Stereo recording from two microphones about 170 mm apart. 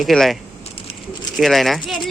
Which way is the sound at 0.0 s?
Centre (ahead or behind).